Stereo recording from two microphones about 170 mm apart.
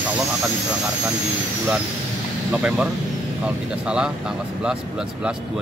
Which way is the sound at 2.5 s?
5° right (ahead or behind).